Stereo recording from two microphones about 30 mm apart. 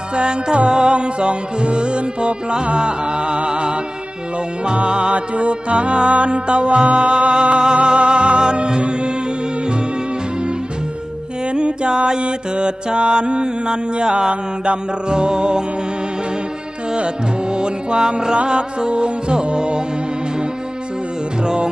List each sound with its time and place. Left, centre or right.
0.1 s music: right
11.4 s mantra: right
14.3 s music: right
16.9 s music: right
21.4 s music: right